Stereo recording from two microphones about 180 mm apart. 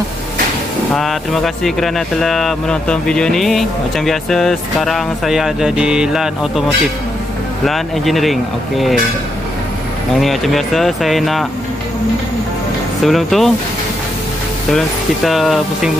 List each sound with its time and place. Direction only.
0.9 s speech: centre (ahead or behind)
7.6 s speech: centre (ahead or behind)
10.1 s speech: centre (ahead or behind)
13.0 s speech: centre (ahead or behind)
15.2 s speech: centre (ahead or behind)